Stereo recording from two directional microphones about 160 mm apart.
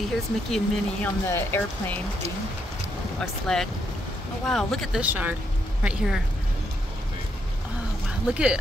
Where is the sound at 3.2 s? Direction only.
5° left (ahead or behind).